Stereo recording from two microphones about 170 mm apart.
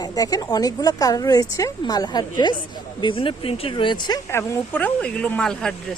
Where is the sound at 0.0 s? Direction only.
20° left (ahead or behind).